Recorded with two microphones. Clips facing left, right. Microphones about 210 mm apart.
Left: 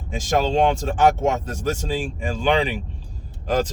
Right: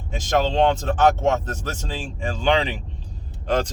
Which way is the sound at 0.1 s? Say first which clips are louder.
Left 1 dB; 10° left (ahead or behind).